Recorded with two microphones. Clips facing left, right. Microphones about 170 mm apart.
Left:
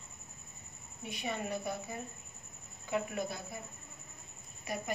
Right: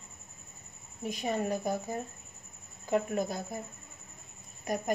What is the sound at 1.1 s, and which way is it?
Speech, 40° right (ahead or behind).